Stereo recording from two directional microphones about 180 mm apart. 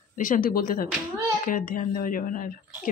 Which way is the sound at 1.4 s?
50° left (ahead or behind).